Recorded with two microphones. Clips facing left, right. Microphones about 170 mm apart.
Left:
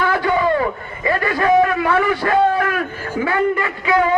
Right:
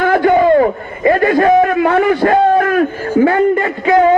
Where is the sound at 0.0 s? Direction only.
50° right (ahead or behind).